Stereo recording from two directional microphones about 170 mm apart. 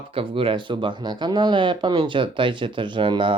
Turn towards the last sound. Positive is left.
turn(degrees=-30)  # may be behind; listen again after turning